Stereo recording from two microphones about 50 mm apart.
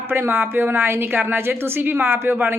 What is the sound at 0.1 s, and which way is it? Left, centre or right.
A woman's voice, right.